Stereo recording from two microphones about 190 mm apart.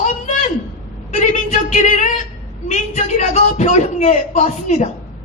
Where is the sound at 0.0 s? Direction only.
40° left (ahead or behind).